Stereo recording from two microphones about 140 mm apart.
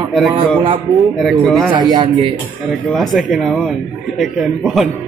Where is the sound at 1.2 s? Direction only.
Centre (ahead or behind).